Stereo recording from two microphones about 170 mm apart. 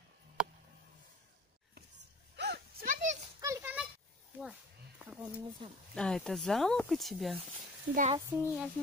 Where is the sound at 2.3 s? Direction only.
80° right; by 3.2 s 50° right (ahead or behind).